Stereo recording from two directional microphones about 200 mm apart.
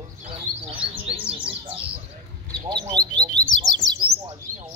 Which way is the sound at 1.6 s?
25° right (ahead or behind).